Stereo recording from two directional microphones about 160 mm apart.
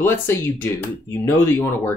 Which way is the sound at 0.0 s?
15° left (ahead or behind).